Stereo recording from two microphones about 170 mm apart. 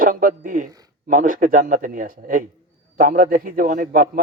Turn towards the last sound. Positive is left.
turn(degrees=-55)  # may be behind; listen again after turning